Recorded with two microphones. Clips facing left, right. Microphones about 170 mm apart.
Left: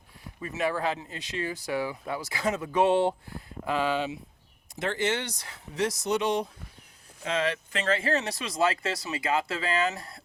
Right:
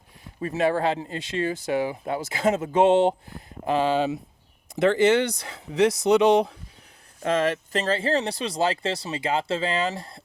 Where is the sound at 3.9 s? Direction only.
35° right (ahead or behind).